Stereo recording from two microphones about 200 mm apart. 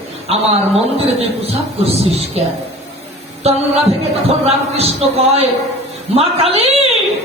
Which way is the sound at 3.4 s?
30° right (ahead or behind).